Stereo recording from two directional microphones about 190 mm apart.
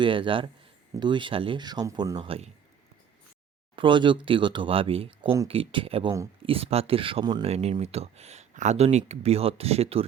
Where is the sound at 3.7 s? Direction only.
25° right (ahead or behind).